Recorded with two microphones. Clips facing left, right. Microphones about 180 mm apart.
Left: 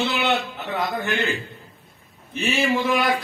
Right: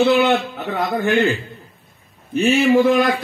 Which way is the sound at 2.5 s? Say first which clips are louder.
Right 7 dB; 55° right (ahead or behind).